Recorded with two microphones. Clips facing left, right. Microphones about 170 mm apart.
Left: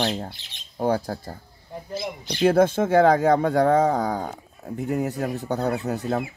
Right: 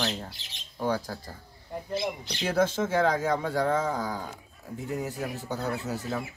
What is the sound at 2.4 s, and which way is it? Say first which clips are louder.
Speech: left 8 dB; 55° left (ahead or behind).